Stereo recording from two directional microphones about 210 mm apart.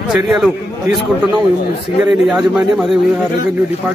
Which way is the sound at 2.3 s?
5° right (ahead or behind).